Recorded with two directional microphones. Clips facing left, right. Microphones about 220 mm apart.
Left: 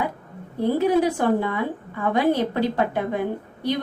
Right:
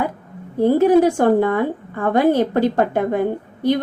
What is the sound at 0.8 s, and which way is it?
A woman's voice, 45° right (ahead or behind).